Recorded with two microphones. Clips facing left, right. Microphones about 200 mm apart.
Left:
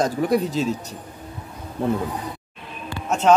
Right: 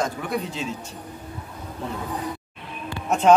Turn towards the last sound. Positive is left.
turn(degrees=-15)  # may be behind; listen again after turning